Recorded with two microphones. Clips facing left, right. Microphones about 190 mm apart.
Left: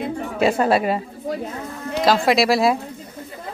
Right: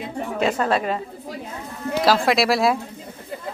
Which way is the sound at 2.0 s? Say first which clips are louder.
Left 1 dB; centre (ahead or behind).